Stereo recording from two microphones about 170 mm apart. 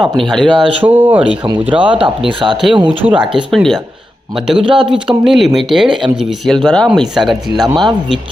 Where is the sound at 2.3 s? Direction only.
30° right (ahead or behind).